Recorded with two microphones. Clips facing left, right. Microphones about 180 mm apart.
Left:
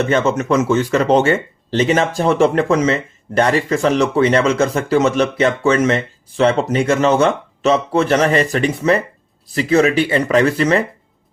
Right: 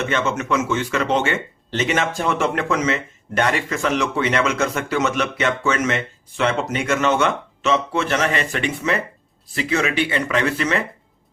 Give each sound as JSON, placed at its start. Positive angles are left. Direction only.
{"t": 0.0, "sound": "speech", "side_deg": 40}